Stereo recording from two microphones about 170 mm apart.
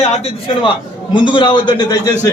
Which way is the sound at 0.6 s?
30° left (ahead or behind).